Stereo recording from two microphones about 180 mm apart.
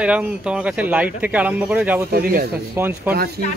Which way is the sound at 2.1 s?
55° right (ahead or behind).